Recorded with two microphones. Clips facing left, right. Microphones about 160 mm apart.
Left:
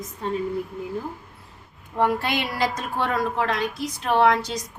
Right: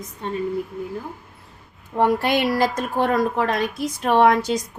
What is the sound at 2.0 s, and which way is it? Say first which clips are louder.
A woman's voice: right 4 dB; 45° right (ahead or behind).